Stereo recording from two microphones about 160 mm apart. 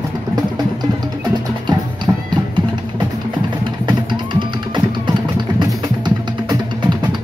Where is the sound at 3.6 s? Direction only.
30° right (ahead or behind).